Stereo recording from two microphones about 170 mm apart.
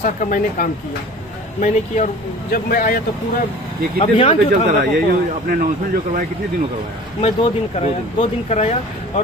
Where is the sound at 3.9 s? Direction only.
30° left (ahead or behind).